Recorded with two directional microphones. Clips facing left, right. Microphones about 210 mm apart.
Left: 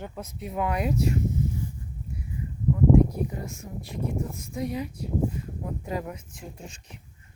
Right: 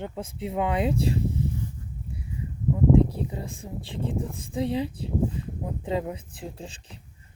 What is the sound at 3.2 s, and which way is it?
Speech, 25° right (ahead or behind).